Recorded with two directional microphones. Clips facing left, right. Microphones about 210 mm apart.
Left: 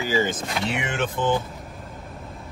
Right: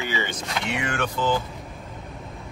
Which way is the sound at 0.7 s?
20° left (ahead or behind).